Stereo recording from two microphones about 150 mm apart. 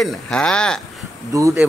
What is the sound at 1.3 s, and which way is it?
Speech, 20° right (ahead or behind).